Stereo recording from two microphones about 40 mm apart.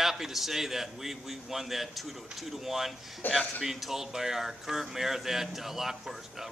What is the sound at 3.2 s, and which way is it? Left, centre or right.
Speech, left.